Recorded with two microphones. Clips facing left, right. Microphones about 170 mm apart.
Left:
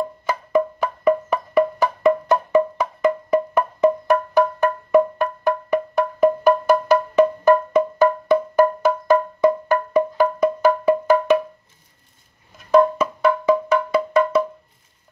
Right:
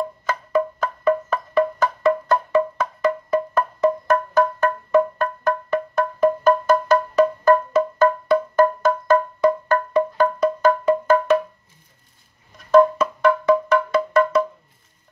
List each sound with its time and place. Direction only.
0.3 s music: 15° left (ahead or behind)
12.7 s music: 10° left (ahead or behind)